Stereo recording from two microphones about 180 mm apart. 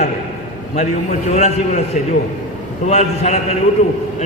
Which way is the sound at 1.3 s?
40° left (ahead or behind).